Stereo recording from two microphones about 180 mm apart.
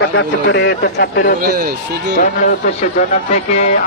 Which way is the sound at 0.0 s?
85° left.